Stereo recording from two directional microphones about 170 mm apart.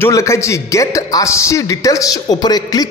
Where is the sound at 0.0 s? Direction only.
15° left (ahead or behind).